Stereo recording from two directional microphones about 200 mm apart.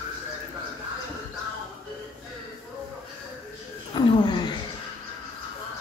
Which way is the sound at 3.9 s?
20° left (ahead or behind).